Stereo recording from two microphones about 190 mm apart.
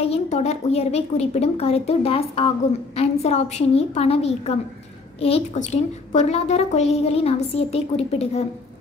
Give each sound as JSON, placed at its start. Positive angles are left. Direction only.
{"t": 0.0, "sound": "a woman's voice", "side_deg": 35}